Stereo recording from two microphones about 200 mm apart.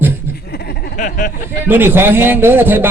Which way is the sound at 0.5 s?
50° left (ahead or behind).